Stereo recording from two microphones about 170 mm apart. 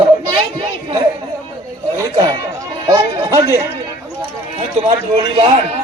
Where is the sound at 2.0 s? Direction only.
25° right (ahead or behind).